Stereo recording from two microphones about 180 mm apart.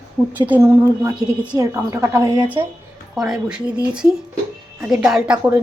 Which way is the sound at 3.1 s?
5° right (ahead or behind).